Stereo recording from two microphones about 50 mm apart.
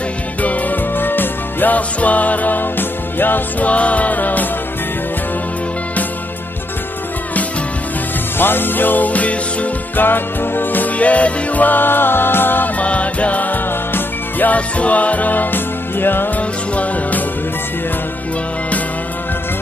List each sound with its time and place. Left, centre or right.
0.4 s music: left
1.8 s music: left
8.4 s music: left
9.9 s music: left
11.0 s music: left
12.7 s music: left
16.3 s music: left